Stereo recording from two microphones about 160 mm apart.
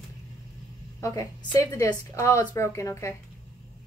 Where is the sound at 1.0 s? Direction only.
20° left (ahead or behind).